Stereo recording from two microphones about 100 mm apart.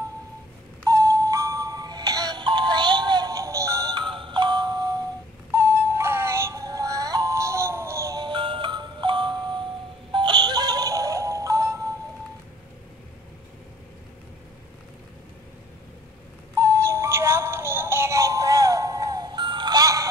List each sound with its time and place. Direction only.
0.8 s music: 35° right (ahead or behind)
3.9 s music: 55° right (ahead or behind)
5.5 s music: 25° right (ahead or behind)
8.2 s music: 55° right (ahead or behind); by 11.9 s 35° right (ahead or behind)
16.5 s music: 30° right (ahead or behind)